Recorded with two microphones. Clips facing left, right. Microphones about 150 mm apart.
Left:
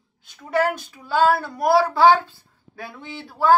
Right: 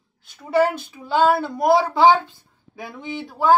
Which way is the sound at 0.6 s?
15° right (ahead or behind).